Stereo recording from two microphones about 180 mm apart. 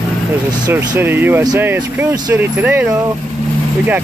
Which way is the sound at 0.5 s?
15° right (ahead or behind).